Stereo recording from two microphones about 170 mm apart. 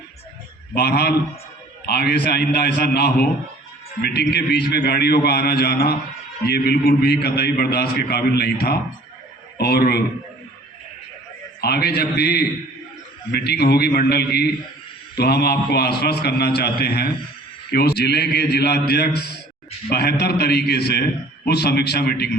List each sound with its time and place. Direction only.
0.7 s a man's voice: 70° left (ahead or behind)
11.6 s a man's voice: 70° left (ahead or behind)